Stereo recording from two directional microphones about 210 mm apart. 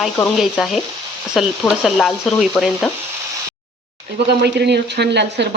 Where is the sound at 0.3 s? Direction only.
Centre (ahead or behind).